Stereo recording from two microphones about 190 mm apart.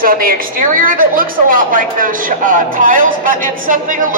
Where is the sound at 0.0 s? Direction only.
50° right (ahead or behind).